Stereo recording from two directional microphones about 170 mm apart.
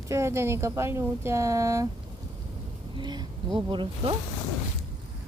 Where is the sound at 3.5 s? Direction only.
30° right (ahead or behind).